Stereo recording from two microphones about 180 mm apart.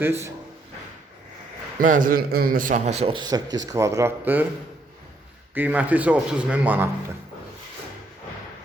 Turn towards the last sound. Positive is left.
turn(degrees=-10)  # may be behind; listen again after turning